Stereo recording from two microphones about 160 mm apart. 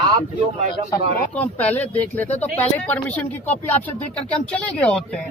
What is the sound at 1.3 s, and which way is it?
Speech, 10° left (ahead or behind).